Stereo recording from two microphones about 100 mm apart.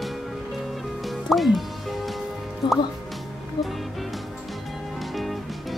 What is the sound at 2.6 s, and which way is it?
Speech, 50° left (ahead or behind).